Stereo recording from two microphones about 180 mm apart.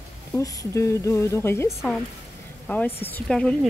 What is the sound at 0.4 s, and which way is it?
Speech, 20° left (ahead or behind).